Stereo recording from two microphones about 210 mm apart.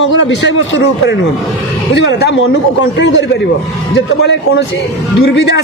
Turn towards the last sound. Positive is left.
turn(degrees=55)  # may be behind; listen again after turning